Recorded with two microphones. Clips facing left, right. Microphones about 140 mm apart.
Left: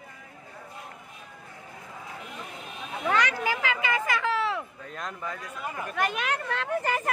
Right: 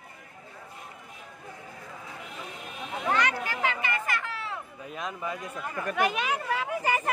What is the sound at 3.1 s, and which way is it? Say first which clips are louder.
Speech: left 2 dB; 90° left.